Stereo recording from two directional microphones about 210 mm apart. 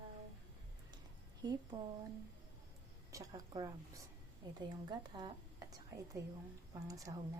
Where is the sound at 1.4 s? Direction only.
20° right (ahead or behind).